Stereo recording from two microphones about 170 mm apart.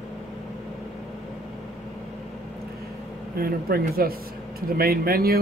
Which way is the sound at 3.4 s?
60° right (ahead or behind).